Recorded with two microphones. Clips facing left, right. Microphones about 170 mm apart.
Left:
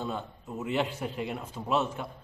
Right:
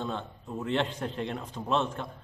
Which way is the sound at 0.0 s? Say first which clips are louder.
Even; 5° left (ahead or behind).